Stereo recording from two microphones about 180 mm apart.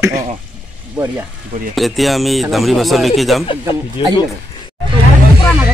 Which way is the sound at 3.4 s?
30° left (ahead or behind).